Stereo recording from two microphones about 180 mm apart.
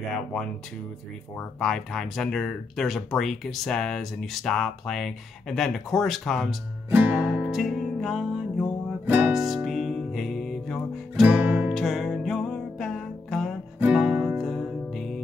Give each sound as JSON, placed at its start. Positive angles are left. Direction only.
{"t": 1.6, "sound": "speech", "side_deg": 0}
{"t": 6.9, "sound": "music", "side_deg": -10}
{"t": 11.2, "sound": "music", "side_deg": -10}